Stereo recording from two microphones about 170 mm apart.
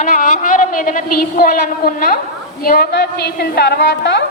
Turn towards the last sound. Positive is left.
turn(degrees=85)